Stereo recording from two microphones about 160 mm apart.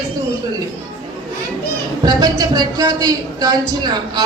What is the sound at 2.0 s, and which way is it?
Speech, 25° right (ahead or behind).